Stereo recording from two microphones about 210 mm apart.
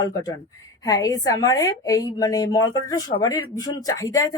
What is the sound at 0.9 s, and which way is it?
A woman's voice, 15° left (ahead or behind).